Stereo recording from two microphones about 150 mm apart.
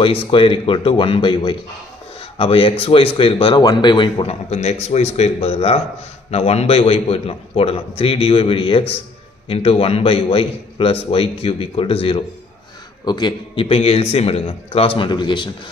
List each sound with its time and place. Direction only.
0.0 s speech: 35° left (ahead or behind)